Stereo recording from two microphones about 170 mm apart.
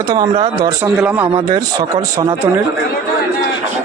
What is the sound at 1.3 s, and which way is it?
Speech, 25° right (ahead or behind).